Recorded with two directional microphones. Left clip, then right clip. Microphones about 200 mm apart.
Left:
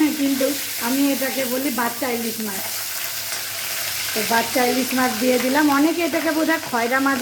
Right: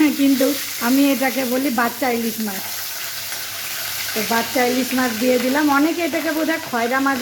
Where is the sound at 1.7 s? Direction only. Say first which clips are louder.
Right 3 dB; 25° right (ahead or behind).